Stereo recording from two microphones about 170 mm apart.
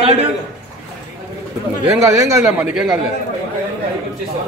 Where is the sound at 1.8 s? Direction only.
15° right (ahead or behind).